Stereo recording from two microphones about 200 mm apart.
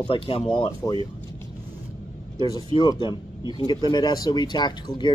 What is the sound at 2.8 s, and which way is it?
Speech, 25° left (ahead or behind).